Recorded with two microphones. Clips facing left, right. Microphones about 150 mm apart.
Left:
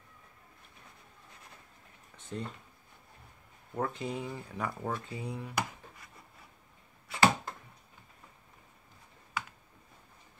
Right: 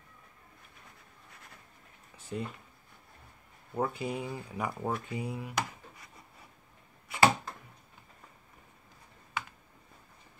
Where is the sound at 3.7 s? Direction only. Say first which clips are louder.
Right 2 dB; 10° right (ahead or behind).